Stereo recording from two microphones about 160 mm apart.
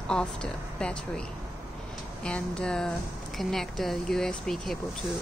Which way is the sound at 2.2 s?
5° left (ahead or behind).